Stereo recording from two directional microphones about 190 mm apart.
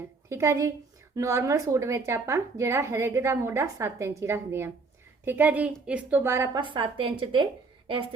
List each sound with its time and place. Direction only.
0.3 s speech: 15° right (ahead or behind)